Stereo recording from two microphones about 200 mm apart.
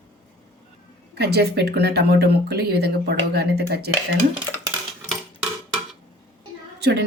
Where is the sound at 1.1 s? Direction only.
55° right (ahead or behind).